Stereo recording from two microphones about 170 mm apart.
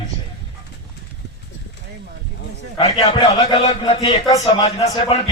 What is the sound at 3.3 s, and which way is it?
A man's voice, 25° left (ahead or behind).